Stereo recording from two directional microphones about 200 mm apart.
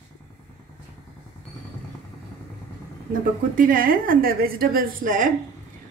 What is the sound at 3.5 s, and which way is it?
A woman's voice, 45° right (ahead or behind).